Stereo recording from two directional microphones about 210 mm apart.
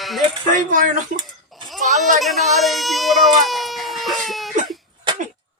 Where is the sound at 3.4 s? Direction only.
Centre (ahead or behind).